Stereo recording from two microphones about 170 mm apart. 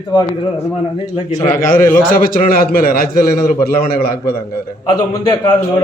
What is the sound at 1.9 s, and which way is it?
A man's voice, 55° left (ahead or behind).